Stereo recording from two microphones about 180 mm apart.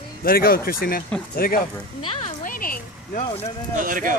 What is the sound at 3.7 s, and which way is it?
Speech, 50° right (ahead or behind).